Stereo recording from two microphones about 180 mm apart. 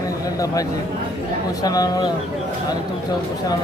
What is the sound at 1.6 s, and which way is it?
Speech, 20° left (ahead or behind).